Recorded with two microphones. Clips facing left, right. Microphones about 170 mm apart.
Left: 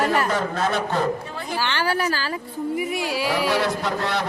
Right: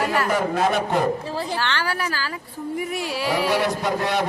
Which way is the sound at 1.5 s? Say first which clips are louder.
Left 2 dB; 10° left (ahead or behind).